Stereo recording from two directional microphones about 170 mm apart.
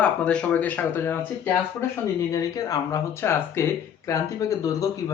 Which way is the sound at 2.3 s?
20° left (ahead or behind).